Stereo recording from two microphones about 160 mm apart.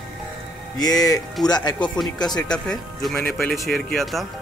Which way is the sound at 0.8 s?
25° left (ahead or behind).